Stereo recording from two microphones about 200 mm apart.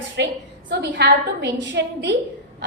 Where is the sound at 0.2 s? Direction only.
60° right (ahead or behind).